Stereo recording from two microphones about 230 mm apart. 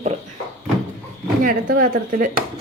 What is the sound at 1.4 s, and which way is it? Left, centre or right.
Speech, right.